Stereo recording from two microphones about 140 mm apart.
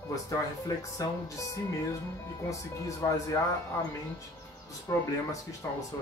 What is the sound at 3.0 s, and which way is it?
Speech, 25° left (ahead or behind).